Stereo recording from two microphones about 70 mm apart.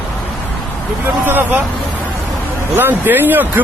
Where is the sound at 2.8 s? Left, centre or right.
Right.